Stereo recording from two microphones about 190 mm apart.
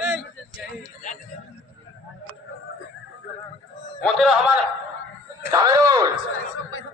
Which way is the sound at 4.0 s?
Centre (ahead or behind).